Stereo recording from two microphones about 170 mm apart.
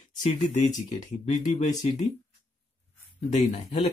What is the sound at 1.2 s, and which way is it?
Speech, 45° left (ahead or behind).